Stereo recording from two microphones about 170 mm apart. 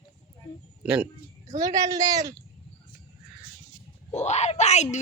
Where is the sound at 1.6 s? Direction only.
20° right (ahead or behind).